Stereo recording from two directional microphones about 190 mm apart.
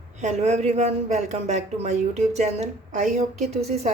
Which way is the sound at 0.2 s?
35° right (ahead or behind).